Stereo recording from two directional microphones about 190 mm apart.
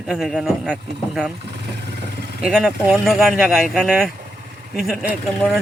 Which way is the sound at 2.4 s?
Centre (ahead or behind).